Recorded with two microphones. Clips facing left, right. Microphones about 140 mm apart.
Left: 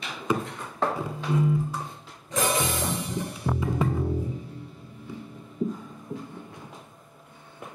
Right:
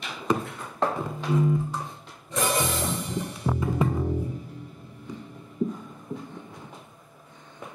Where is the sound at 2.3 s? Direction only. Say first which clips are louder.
Even; centre (ahead or behind).